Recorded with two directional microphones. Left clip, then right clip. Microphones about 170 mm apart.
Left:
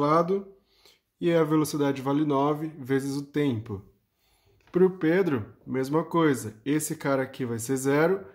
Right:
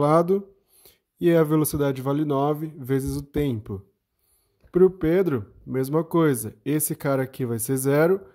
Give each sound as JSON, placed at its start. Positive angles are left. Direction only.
{"t": 0.0, "sound": "speech", "side_deg": -60}